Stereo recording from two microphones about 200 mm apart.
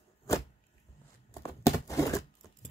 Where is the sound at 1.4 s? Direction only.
15° left (ahead or behind).